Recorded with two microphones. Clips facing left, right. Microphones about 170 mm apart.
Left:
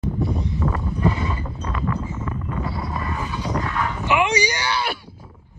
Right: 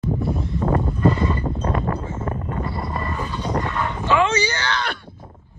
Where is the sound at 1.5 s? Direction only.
50° right (ahead or behind).